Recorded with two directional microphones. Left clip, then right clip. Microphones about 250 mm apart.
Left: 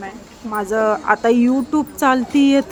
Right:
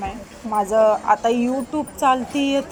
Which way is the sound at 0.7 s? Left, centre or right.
Centre.